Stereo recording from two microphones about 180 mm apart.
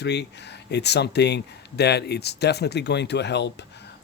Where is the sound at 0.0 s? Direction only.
70° left (ahead or behind).